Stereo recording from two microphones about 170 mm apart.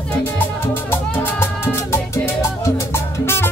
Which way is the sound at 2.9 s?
15° left (ahead or behind).